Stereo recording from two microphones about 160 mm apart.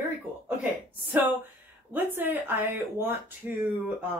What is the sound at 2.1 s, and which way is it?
Speech, 15° right (ahead or behind).